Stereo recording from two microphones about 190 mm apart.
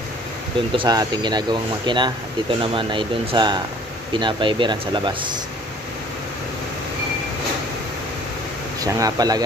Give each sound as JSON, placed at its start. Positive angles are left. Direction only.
{"t": 0.7, "sound": "speech", "side_deg": -20}
{"t": 8.8, "sound": "speech", "side_deg": -20}